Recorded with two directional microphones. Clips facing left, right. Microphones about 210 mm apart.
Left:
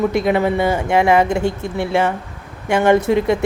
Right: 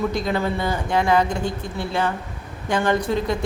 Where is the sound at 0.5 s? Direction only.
25° left (ahead or behind).